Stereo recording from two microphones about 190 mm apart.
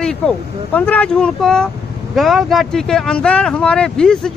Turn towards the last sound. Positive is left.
turn(degrees=5)  # may be behind; listen again after turning